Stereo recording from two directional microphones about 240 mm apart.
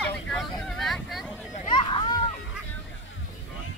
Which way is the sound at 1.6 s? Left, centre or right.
Centre.